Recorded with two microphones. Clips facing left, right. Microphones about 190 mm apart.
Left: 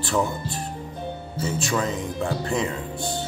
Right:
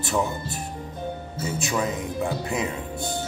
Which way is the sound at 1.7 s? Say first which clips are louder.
Right 1 dB; 15° right (ahead or behind).